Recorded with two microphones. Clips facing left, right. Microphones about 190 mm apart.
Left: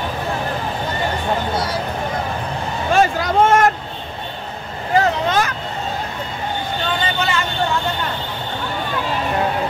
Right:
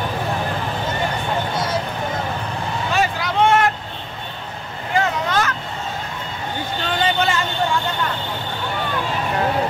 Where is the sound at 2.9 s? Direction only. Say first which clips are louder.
Left 6 dB; 45° left (ahead or behind).